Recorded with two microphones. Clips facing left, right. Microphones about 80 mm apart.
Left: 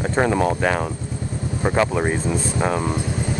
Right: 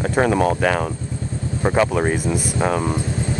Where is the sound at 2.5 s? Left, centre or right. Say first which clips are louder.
Right 2 dB; centre.